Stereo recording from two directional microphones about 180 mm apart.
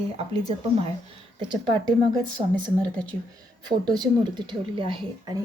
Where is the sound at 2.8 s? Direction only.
5° left (ahead or behind).